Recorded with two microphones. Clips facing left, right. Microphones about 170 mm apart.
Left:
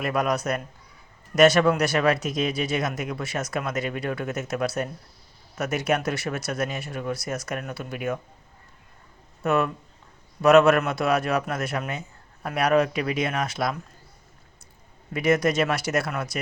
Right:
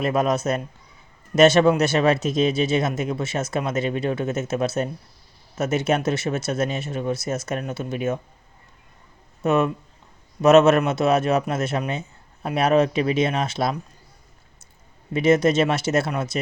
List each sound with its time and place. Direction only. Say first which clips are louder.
0.0 s speech: right 4 dB; 25° right (ahead or behind)
9.4 s speech: right 3 dB; 20° right (ahead or behind)
15.1 s speech: right 4 dB; 25° right (ahead or behind)